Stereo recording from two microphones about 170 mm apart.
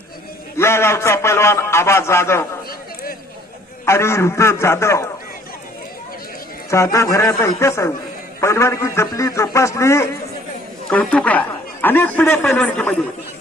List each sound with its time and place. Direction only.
0.5 s a man's voice: 15° left (ahead or behind)
2.6 s a sound: 60° left (ahead or behind)
3.8 s a man's voice: 15° left (ahead or behind)
6.7 s a man's voice: 15° left (ahead or behind)